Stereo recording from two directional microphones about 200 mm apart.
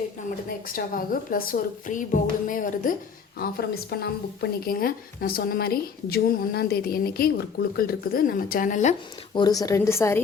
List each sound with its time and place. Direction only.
0.7 s a woman's voice: 45° left (ahead or behind)
9.3 s speech: 20° left (ahead or behind)